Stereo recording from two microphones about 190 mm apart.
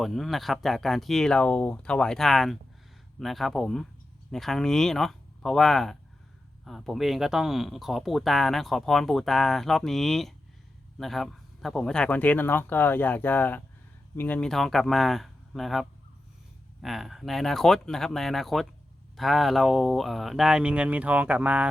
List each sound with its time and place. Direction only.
0.0 s speech: centre (ahead or behind)